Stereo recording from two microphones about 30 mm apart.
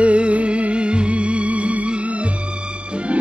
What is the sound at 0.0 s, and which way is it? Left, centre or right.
Music, right.